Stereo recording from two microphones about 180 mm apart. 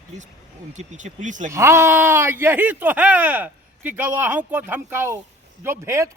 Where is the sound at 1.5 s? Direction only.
15° right (ahead or behind).